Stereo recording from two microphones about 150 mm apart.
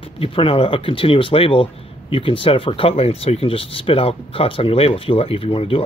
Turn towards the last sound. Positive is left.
turn(degrees=40)  # may be behind; listen again after turning